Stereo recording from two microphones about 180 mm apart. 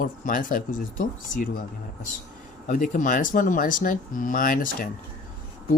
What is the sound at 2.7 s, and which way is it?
Speech, 45° left (ahead or behind).